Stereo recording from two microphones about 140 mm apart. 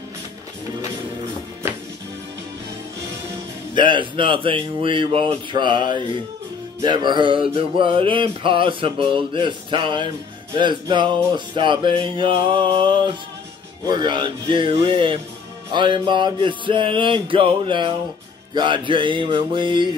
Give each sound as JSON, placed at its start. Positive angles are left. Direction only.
{"t": 3.7, "sound": "music", "side_deg": -35}